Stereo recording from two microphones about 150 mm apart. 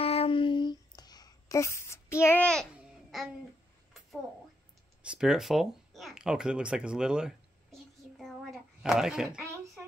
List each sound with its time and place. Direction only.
0.0 s a sound: 40° left (ahead or behind); by 2.4 s 15° left (ahead or behind)
2.4 s a child's voice: 5° left (ahead or behind)
2.8 s babbling: centre (ahead or behind)
5.0 s speech: 5° right (ahead or behind)